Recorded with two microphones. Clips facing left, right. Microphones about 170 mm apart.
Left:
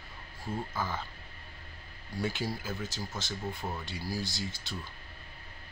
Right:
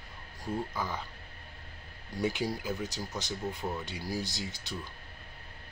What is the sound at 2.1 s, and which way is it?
Speech, 20° right (ahead or behind).